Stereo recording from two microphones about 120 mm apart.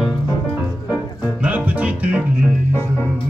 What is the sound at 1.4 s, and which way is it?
Music, 15° right (ahead or behind).